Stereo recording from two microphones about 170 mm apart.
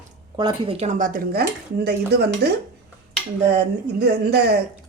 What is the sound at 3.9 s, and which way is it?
Speech, 70° right (ahead or behind).